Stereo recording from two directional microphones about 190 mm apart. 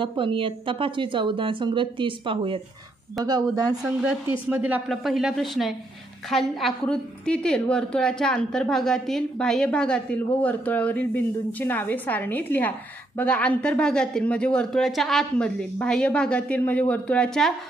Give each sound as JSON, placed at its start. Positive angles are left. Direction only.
{"t": 0.0, "sound": "speech", "side_deg": -25}
{"t": 4.5, "sound": "a woman's voice", "side_deg": -10}